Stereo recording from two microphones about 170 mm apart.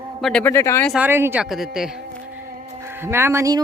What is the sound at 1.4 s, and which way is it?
Speech, centre (ahead or behind).